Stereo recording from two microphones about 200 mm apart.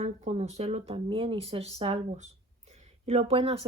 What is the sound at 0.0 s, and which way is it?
Speech, 35° right (ahead or behind).